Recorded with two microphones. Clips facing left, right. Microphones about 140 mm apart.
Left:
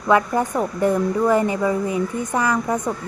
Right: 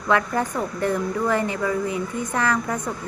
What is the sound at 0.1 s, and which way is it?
Speech, 15° left (ahead or behind).